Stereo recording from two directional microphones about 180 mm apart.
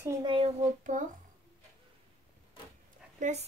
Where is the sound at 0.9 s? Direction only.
45° right (ahead or behind).